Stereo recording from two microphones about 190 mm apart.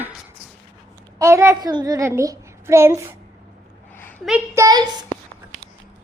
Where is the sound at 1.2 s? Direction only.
15° right (ahead or behind).